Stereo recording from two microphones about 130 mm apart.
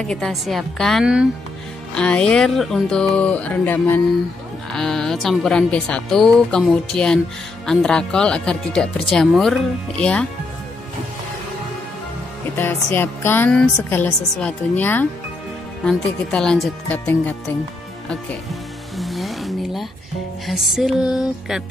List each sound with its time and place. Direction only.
0.0 s speech: 5° left (ahead or behind)
4.7 s speech: 5° left (ahead or behind)
12.5 s speech: 15° left (ahead or behind)
18.0 s music: 5° left (ahead or behind)
20.4 s speech: centre (ahead or behind)